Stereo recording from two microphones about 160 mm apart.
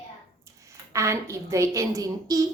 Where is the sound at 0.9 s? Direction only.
20° right (ahead or behind).